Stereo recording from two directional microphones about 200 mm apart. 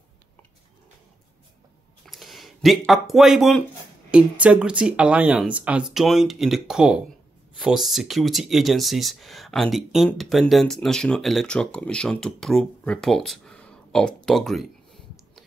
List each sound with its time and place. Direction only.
2.0 s speech: centre (ahead or behind)